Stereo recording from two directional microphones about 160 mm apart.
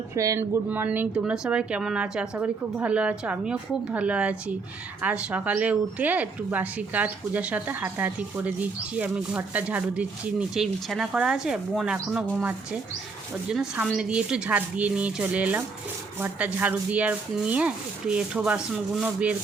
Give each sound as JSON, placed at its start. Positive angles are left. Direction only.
{"t": 0.2, "sound": "speech", "side_deg": -20}